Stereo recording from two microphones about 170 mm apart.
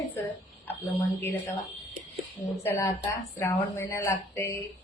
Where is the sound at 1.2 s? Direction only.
15° left (ahead or behind).